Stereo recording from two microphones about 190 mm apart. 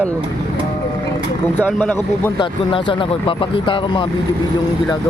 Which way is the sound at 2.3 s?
25° left (ahead or behind).